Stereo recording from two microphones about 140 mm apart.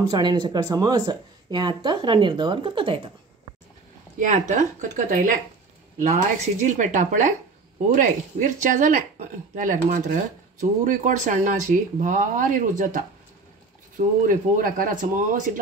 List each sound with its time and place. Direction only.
0.1 s speech: 30° right (ahead or behind)
4.2 s speech: 65° right (ahead or behind)
6.6 s speech: 65° right (ahead or behind)